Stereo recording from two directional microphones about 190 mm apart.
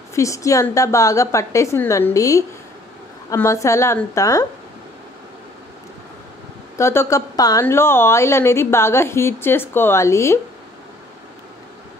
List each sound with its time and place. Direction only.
0.1 s a woman's voice: 15° left (ahead or behind)
6.8 s a woman's voice: 15° left (ahead or behind)